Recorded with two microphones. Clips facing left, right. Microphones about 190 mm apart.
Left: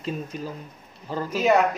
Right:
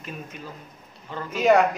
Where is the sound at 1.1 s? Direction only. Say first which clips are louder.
Left 5 dB; 35° left (ahead or behind).